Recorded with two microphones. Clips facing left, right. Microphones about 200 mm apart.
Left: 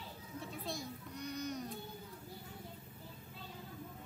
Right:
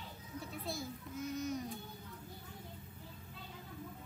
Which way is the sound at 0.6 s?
Centre (ahead or behind).